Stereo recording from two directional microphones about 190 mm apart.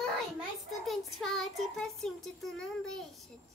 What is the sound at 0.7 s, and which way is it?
Child singing, centre (ahead or behind).